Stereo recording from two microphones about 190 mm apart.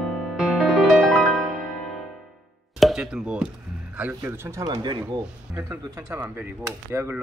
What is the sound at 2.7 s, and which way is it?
Speech, centre (ahead or behind).